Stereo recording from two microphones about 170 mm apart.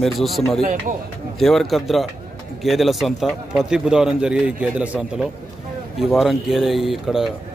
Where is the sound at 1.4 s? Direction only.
Centre (ahead or behind).